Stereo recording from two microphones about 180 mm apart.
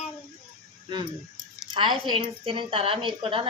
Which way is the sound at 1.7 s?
25° right (ahead or behind).